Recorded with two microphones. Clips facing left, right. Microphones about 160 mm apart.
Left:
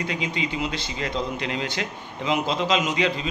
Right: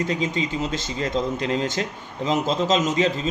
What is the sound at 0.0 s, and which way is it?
A man's voice, 40° right (ahead or behind).